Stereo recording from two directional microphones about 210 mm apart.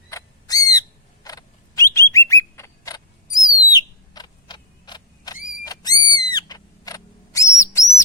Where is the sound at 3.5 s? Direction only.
20° left (ahead or behind).